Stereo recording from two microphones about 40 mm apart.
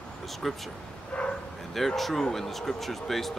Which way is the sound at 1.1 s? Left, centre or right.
Left.